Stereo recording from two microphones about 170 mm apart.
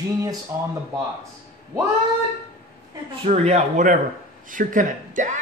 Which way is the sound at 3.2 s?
40° right (ahead or behind).